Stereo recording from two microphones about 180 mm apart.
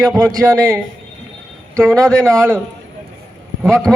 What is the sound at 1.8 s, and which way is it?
Speech, 5° left (ahead or behind).